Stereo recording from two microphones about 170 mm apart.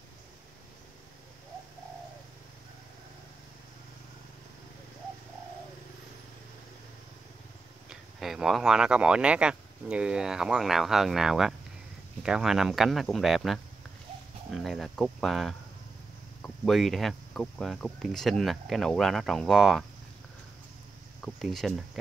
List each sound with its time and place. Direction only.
7.9 s speech: centre (ahead or behind)
21.2 s speech: centre (ahead or behind)